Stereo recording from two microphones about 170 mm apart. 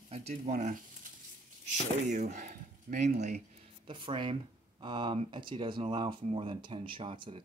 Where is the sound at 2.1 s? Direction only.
45° right (ahead or behind).